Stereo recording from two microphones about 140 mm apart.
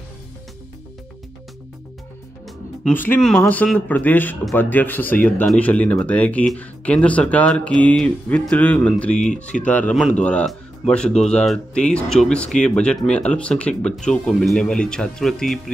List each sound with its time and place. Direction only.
2.8 s speech: 15° left (ahead or behind)
9.2 s speech: 60° left (ahead or behind)
9.6 s speech: 10° left (ahead or behind)